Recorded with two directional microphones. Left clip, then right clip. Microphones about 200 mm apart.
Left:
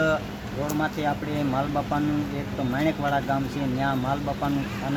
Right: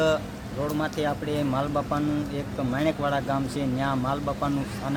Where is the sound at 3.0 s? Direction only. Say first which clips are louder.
Left 1 dB; 15° right (ahead or behind).